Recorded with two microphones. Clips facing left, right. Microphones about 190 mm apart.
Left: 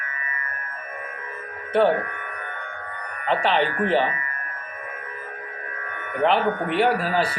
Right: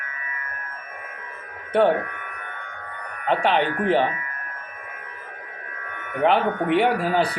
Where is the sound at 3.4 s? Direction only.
15° right (ahead or behind).